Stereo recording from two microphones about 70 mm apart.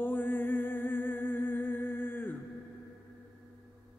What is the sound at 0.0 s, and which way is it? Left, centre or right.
Music, left.